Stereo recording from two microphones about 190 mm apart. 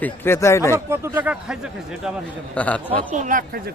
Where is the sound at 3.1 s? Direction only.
45° right (ahead or behind).